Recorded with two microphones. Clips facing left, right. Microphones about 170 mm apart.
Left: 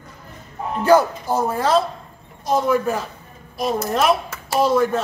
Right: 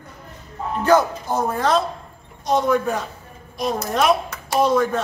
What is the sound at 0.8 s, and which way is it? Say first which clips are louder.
Speech: left 2 dB; 10° left (ahead or behind).